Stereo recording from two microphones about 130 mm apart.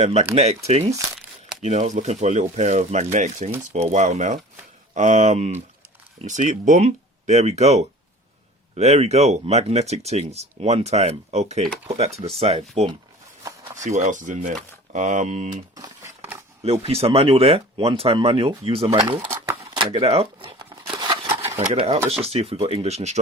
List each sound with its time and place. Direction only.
0.0 s speech: 55° right (ahead or behind)
13.7 s speech: 70° right (ahead or behind)
15.5 s speech: 30° right (ahead or behind)
16.8 s speech: 50° right (ahead or behind)
19.7 s a sound: 45° right (ahead or behind)
21.6 s speech: 50° right (ahead or behind)